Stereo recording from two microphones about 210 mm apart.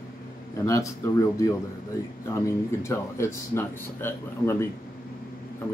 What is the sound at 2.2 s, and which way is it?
Speech, 15° left (ahead or behind).